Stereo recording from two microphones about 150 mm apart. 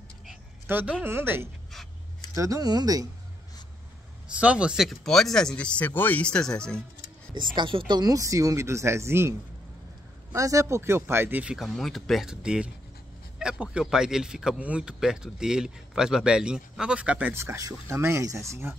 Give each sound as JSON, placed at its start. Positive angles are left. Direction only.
{"t": 0.7, "sound": "a woman's voice", "side_deg": -15}
{"t": 4.4, "sound": "speech", "side_deg": -10}
{"t": 7.3, "sound": "a woman's voice", "side_deg": -30}
{"t": 10.3, "sound": "speech", "side_deg": -20}